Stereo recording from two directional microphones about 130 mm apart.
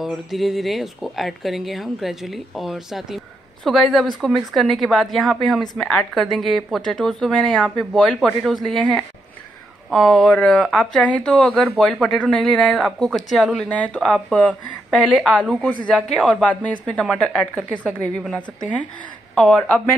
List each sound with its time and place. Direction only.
0.0 s a woman's voice: centre (ahead or behind)